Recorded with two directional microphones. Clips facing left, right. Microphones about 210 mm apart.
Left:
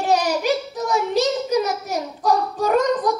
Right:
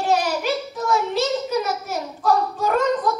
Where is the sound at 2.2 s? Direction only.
15° left (ahead or behind).